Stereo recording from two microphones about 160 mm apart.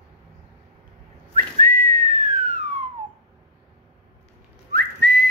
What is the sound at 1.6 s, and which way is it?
Whistling, 60° right (ahead or behind).